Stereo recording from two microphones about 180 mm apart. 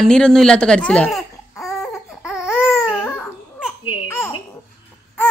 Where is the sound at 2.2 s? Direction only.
5° right (ahead or behind).